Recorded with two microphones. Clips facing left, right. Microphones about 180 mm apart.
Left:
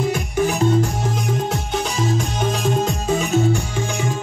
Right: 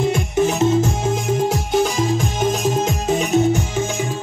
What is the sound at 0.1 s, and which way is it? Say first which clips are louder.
Music: right 2 dB; 20° right (ahead or behind).